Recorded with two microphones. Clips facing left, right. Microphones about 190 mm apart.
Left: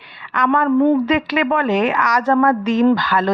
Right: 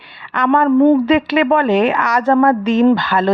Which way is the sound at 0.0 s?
30° right (ahead or behind).